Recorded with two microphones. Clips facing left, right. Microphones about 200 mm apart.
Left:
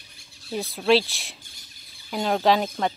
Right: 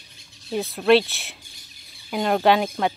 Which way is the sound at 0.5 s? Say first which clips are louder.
Right 3 dB; centre (ahead or behind).